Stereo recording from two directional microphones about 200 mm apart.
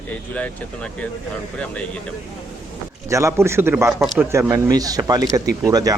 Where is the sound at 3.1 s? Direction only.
15° right (ahead or behind).